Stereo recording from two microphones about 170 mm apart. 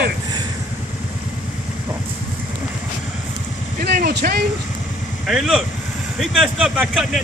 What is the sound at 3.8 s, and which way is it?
Vehicle, 60° right (ahead or behind).